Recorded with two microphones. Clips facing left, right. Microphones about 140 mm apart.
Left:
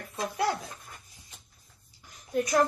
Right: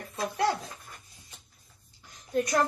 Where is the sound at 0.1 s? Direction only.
Centre (ahead or behind).